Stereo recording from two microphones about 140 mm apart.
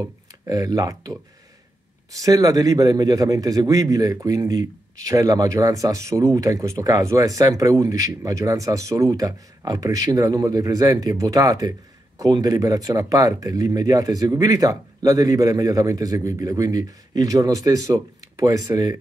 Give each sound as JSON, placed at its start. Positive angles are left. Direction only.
{"t": 0.0, "sound": "speech", "side_deg": -25}
{"t": 2.1, "sound": "a man's voice", "side_deg": -25}